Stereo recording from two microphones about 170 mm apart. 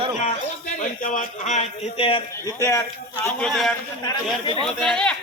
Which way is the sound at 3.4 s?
Centre (ahead or behind).